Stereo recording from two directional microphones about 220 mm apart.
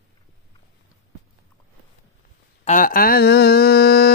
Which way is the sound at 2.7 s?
40° left (ahead or behind).